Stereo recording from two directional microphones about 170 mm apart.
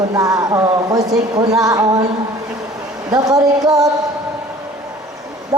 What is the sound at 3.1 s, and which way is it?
Speech, 20° right (ahead or behind).